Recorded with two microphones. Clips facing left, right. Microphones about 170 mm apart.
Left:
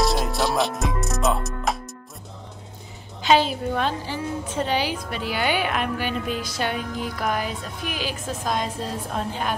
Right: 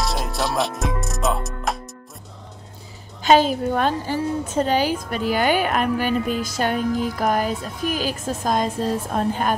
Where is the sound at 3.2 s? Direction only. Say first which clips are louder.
Right 3 dB; 45° right (ahead or behind).